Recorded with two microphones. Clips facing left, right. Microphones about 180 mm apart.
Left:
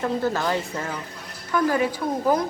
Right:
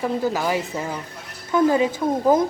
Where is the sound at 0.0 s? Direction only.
15° right (ahead or behind).